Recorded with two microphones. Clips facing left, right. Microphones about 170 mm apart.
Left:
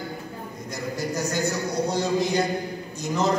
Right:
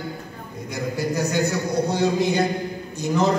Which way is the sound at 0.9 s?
60° right (ahead or behind).